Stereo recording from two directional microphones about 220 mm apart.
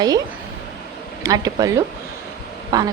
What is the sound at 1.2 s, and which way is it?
A woman's voice, 15° right (ahead or behind).